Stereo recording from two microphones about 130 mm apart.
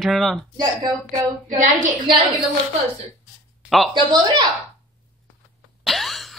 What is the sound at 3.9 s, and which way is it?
Speech, 35° right (ahead or behind).